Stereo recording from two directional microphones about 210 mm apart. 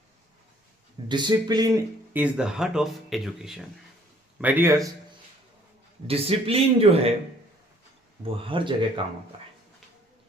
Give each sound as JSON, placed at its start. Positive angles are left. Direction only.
{"t": 1.0, "sound": "speech", "side_deg": -20}
{"t": 6.1, "sound": "speech", "side_deg": -25}
{"t": 8.2, "sound": "speech", "side_deg": -25}